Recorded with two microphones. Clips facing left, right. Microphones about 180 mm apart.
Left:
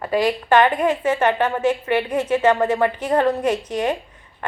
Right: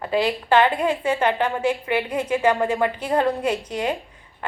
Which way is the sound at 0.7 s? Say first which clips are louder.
Left 2 dB; 10° right (ahead or behind).